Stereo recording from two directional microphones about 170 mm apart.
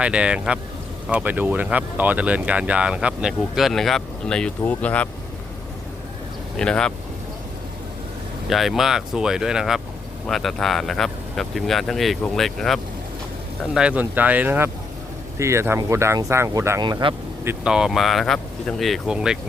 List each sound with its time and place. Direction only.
0.0 s speech: 5° right (ahead or behind)
6.6 s speech: 5° left (ahead or behind)
8.4 s speech: centre (ahead or behind)
16.8 s speech: 30° right (ahead or behind)
17.4 s speech: 10° right (ahead or behind)